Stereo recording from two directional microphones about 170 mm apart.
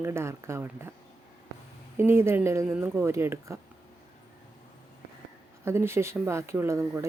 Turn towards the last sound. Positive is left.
turn(degrees=-15)  # may be behind; listen again after turning